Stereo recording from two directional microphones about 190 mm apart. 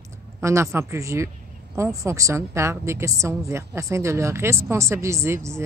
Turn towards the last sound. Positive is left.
turn(degrees=-15)  # may be behind; listen again after turning